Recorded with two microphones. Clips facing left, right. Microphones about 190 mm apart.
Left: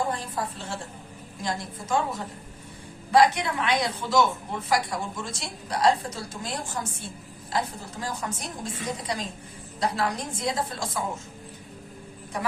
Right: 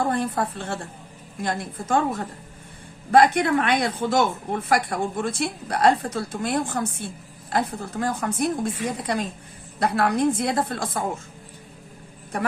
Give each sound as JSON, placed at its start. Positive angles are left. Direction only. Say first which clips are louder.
{"t": 0.0, "sound": "speech", "louder": "right 6 dB", "side_deg": -60}